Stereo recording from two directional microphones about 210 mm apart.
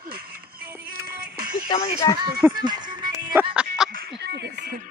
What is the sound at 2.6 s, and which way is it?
Music, 20° right (ahead or behind).